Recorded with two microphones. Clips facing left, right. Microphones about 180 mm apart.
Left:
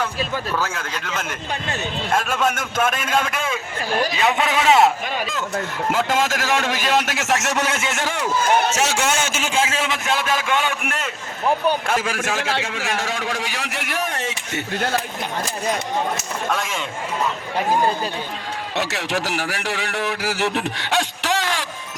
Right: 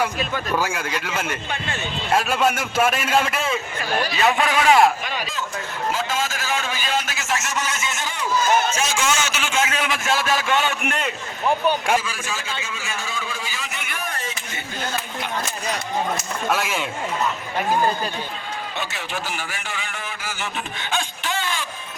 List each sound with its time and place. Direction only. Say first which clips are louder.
0.5 s a man's voice: right 2 dB; 10° right (ahead or behind)
4.1 s a man's voice: even; 20° left (ahead or behind)
5.0 s a man's voice: left 3 dB; 50° left (ahead or behind)
9.5 s a man's voice: left 1 dB; 30° left (ahead or behind)
10.8 s speech: right 2 dB; centre (ahead or behind)
12.1 s a man's voice: left 7 dB; 80° left
16.5 s speech: right 2 dB; 5° right (ahead or behind)
18.8 s a man's voice: left 9 dB; 80° left